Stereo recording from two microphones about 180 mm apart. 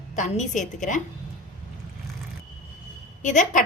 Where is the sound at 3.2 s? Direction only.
45° left (ahead or behind).